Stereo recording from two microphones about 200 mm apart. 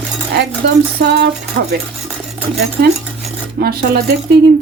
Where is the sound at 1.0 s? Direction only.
55° right (ahead or behind).